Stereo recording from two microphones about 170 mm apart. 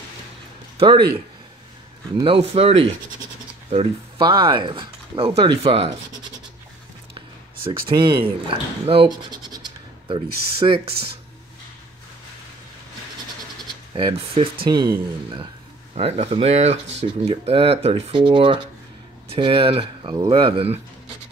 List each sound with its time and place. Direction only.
0.7 s speech: 30° right (ahead or behind)
2.1 s speech: 30° right (ahead or behind)
7.9 s speech: 30° right (ahead or behind)
13.9 s speech: 35° right (ahead or behind)
15.9 s speech: 40° right (ahead or behind)